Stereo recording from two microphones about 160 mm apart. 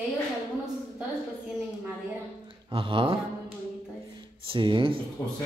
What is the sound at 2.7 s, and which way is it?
Speech, 30° right (ahead or behind).